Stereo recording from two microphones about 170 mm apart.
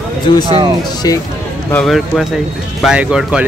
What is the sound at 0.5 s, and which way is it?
Speech, 30° right (ahead or behind).